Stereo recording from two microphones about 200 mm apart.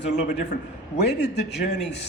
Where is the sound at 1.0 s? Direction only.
55° left (ahead or behind).